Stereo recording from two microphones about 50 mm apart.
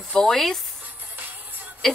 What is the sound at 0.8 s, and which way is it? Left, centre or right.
Music, right.